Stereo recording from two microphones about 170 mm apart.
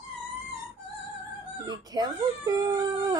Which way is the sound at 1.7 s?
25° right (ahead or behind).